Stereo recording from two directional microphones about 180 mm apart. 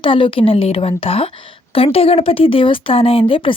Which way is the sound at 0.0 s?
30° left (ahead or behind).